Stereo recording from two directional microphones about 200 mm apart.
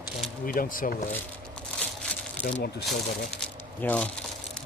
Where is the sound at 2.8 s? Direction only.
5° left (ahead or behind).